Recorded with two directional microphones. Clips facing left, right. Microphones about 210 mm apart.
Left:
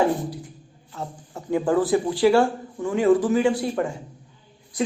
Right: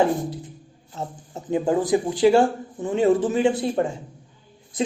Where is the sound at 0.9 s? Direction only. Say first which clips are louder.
Right 1 dB; 20° right (ahead or behind).